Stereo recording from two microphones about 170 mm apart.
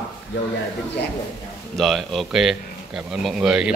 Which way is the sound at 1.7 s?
Centre (ahead or behind).